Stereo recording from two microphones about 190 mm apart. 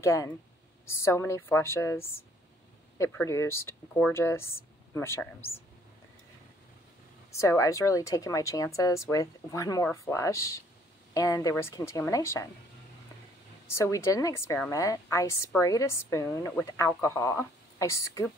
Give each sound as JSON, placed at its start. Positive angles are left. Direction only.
{"t": 0.0, "sound": "a woman's voice", "side_deg": 15}
{"t": 7.2, "sound": "a woman's voice", "side_deg": 15}
{"t": 13.7, "sound": "a woman's voice", "side_deg": 15}